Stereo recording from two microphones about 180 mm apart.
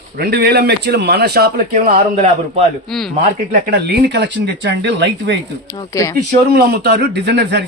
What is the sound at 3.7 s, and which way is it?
Speech, 65° right (ahead or behind).